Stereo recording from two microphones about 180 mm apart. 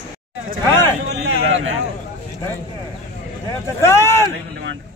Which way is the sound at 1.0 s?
70° right (ahead or behind).